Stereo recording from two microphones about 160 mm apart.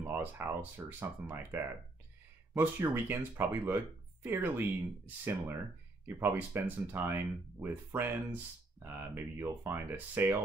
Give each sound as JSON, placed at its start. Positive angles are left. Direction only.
{"t": 0.0, "sound": "speech", "side_deg": -10}